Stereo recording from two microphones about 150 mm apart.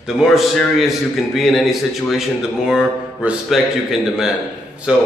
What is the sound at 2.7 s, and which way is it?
A man's voice, 5° right (ahead or behind).